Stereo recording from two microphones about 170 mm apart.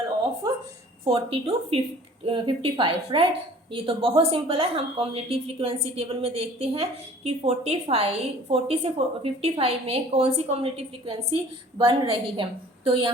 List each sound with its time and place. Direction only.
1.0 s a woman's voice: 35° right (ahead or behind)